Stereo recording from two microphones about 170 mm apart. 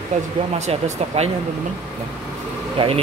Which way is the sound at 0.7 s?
40° right (ahead or behind).